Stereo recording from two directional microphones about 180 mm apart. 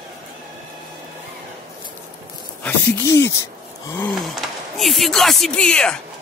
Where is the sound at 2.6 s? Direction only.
15° left (ahead or behind).